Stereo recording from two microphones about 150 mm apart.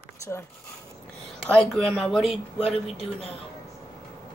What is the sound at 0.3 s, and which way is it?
Speech, 15° left (ahead or behind).